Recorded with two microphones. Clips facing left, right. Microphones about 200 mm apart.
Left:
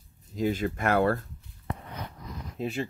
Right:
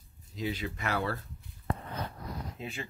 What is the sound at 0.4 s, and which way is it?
Speech, 50° left (ahead or behind).